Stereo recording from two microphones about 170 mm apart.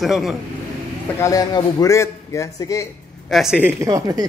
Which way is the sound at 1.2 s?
20° left (ahead or behind).